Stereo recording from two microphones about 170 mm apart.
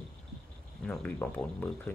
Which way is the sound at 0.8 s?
5° left (ahead or behind).